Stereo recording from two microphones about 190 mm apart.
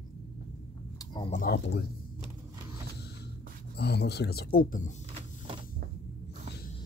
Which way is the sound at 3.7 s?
60° left (ahead or behind).